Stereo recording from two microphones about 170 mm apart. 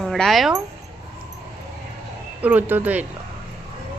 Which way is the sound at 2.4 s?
10° right (ahead or behind).